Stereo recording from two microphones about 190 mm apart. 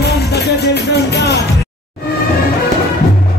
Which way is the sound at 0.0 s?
60° left (ahead or behind).